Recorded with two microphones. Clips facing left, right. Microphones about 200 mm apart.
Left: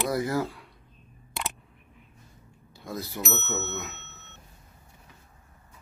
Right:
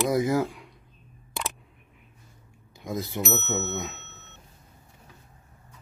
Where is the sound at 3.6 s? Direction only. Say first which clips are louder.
Right 3 dB; centre (ahead or behind).